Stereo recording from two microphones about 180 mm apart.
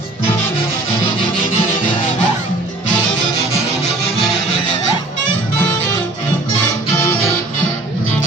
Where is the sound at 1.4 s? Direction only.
45° left (ahead or behind).